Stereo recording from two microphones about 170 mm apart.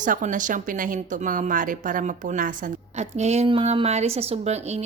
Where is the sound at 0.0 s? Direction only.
50° right (ahead or behind).